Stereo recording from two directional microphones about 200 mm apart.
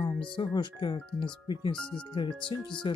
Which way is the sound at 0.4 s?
25° left (ahead or behind).